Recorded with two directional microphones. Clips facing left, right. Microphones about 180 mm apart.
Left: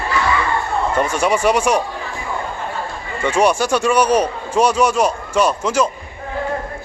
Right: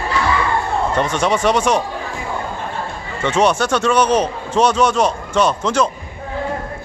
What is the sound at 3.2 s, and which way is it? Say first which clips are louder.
A man's voice: even; 10° left (ahead or behind).